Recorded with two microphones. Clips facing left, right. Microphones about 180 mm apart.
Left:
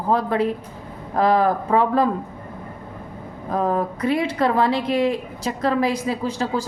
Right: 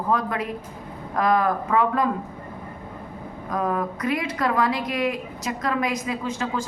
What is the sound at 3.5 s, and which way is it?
A woman's voice, 30° left (ahead or behind).